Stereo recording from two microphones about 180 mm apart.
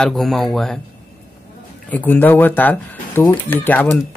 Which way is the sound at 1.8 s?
10° left (ahead or behind).